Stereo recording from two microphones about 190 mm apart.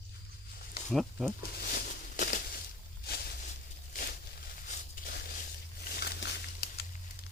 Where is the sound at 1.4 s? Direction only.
50° left (ahead or behind).